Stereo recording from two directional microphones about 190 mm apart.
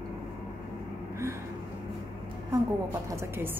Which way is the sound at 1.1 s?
15° right (ahead or behind).